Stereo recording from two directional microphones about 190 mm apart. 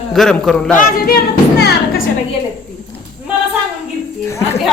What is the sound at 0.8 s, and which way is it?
Music, 50° left (ahead or behind).